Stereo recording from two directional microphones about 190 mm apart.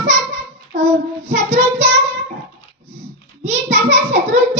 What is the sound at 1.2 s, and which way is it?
Speech, 35° right (ahead or behind).